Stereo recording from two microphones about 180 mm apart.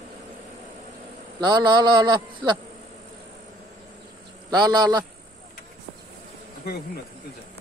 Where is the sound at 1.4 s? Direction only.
25° right (ahead or behind).